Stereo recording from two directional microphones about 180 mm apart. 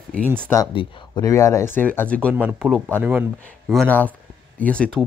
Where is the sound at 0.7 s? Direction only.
20° left (ahead or behind).